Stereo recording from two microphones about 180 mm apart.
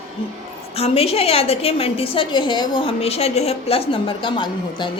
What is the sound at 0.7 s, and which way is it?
A woman's voice, 35° left (ahead or behind).